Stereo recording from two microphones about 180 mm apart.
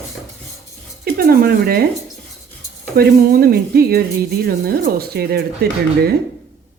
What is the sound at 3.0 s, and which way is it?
Speech, 55° right (ahead or behind).